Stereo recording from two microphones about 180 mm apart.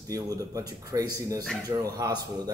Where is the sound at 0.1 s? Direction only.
20° right (ahead or behind).